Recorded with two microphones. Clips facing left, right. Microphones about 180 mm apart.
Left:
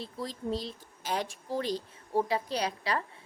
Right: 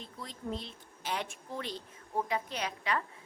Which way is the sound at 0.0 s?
35° left (ahead or behind).